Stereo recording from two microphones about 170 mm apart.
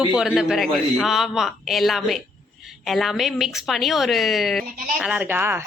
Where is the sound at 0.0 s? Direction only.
5° right (ahead or behind).